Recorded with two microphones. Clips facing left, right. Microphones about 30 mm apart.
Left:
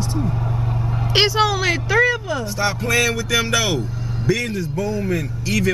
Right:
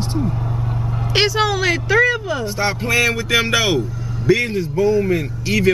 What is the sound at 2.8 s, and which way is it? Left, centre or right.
Speech, right.